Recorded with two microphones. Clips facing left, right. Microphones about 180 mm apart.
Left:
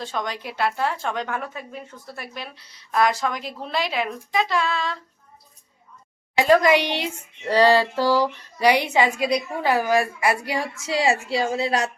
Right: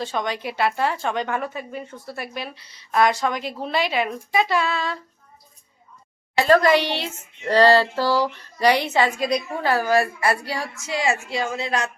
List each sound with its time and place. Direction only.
0.0 s a woman's voice: centre (ahead or behind)
6.3 s speech: 15° left (ahead or behind)
10.8 s a woman's voice: 30° left (ahead or behind)